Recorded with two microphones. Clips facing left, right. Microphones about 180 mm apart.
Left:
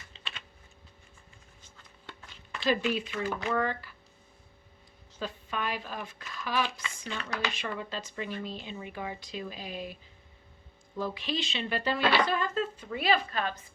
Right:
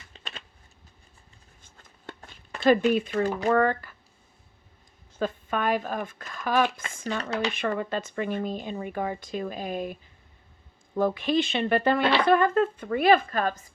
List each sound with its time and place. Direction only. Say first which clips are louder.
0.1 s typing: right 4 dB; 45° right (ahead or behind)
1.6 s a sound: right 7 dB; 45° right (ahead or behind)
5.2 s speech: right 8 dB; 50° right (ahead or behind)